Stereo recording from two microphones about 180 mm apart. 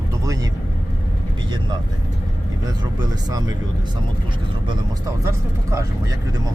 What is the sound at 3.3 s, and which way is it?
Speech, 20° right (ahead or behind).